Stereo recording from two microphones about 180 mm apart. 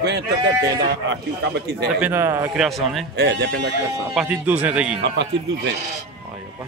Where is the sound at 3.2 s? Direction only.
80° right.